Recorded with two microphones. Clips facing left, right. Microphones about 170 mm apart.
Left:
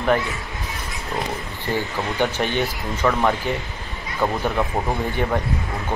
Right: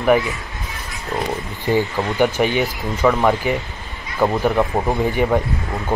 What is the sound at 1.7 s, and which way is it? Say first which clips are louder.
Speech: right 6 dB; 15° right (ahead or behind).